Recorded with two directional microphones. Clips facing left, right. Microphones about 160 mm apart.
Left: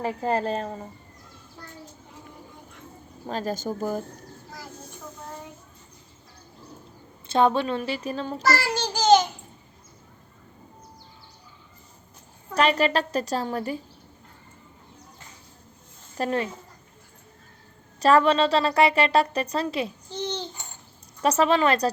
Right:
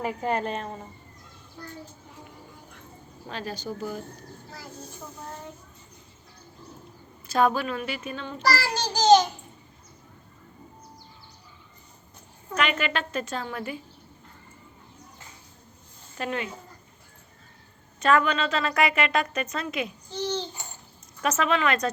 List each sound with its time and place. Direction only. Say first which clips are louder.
0.0 s a woman's voice: left 2 dB; 35° left (ahead or behind)
3.2 s speech: left 5 dB; 40° left (ahead or behind)
7.3 s a woman's voice: left 2 dB; 25° left (ahead or behind)
12.5 s a woman's voice: left 5 dB; 35° left (ahead or behind)
16.1 s a woman's voice: left 5 dB; 35° left (ahead or behind)
18.0 s a woman's voice: left 4 dB; 35° left (ahead or behind)
20.1 s babbling: right 2 dB; 20° left (ahead or behind)
21.2 s a woman's voice: left 4 dB; 35° left (ahead or behind)